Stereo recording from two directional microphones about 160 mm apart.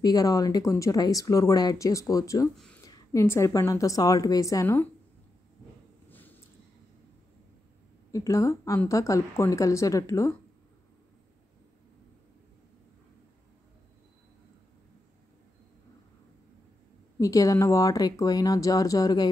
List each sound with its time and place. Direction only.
0.0 s speech: 25° left (ahead or behind)
6.0 s a sound: 10° left (ahead or behind)
8.1 s speech: 20° left (ahead or behind)
17.2 s speech: 20° left (ahead or behind)